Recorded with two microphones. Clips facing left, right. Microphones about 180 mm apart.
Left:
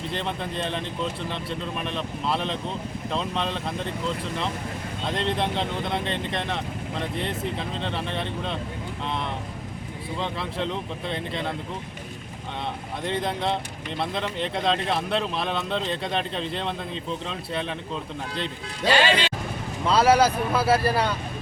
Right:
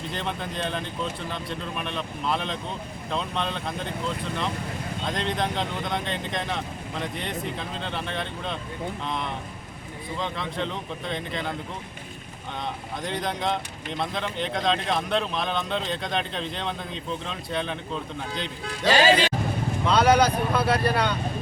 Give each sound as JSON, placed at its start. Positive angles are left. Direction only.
{"t": 0.1, "sound": "speech", "side_deg": 0}
{"t": 5.0, "sound": "speech", "side_deg": 0}
{"t": 13.0, "sound": "speech", "side_deg": 0}
{"t": 18.9, "sound": "speech", "side_deg": -40}
{"t": 19.9, "sound": "speech", "side_deg": 5}